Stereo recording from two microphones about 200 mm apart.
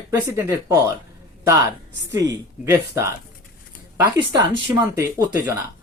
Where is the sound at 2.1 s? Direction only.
15° right (ahead or behind).